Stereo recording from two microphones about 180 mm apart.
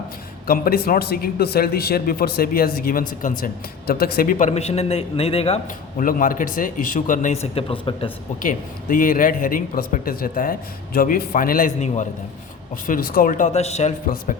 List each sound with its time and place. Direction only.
0.4 s a man's voice: 55° left (ahead or behind); by 5.5 s 35° left (ahead or behind)
6.0 s a man's voice: 50° left (ahead or behind); by 8.1 s 30° left (ahead or behind)
8.4 s a man's voice: 50° left (ahead or behind)